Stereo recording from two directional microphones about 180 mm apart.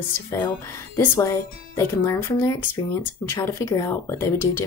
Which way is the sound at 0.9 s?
15° left (ahead or behind).